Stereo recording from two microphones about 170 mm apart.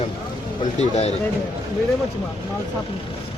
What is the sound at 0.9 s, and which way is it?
Speech, 40° left (ahead or behind).